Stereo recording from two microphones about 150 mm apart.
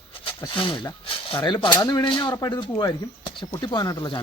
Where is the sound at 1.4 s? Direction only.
30° left (ahead or behind).